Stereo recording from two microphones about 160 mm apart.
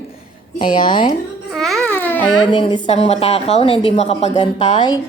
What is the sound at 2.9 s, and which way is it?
A woman's voice, 40° left (ahead or behind).